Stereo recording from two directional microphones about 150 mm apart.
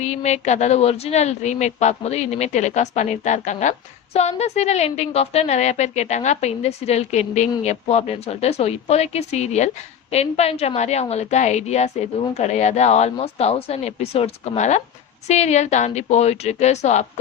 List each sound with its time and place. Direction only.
0.0 s speech: 50° left (ahead or behind)